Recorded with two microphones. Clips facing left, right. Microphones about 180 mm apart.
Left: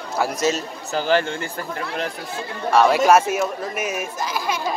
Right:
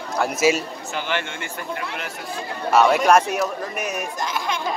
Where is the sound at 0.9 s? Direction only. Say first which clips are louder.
Left 7 dB; 40° left (ahead or behind).